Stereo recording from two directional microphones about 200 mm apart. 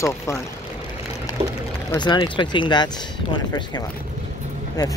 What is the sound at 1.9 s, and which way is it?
Speech, 20° left (ahead or behind).